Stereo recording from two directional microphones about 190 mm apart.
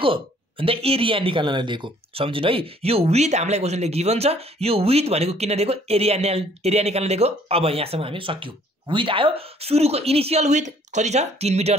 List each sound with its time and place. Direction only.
0.0 s speech: 25° right (ahead or behind)